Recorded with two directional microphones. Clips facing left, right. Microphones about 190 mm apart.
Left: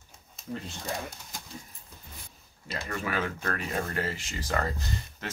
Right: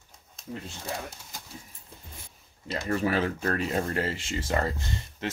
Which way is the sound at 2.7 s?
30° right (ahead or behind).